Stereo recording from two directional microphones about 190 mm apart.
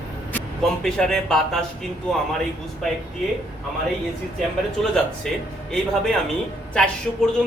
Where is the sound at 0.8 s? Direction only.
5° left (ahead or behind).